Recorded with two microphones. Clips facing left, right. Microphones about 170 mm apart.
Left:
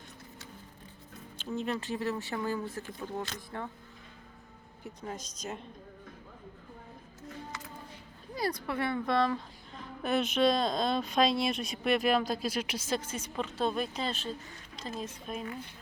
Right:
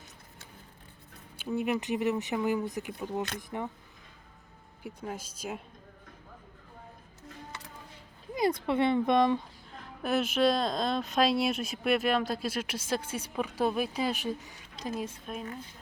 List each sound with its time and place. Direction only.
1.4 s a woman's voice: 15° right (ahead or behind)
5.0 s a woman's voice: 5° right (ahead or behind)
8.4 s speech: 25° right (ahead or behind)
10.0 s a woman's voice: 5° right (ahead or behind)